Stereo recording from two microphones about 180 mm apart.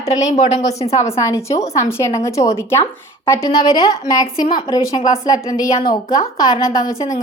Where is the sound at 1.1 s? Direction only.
15° left (ahead or behind).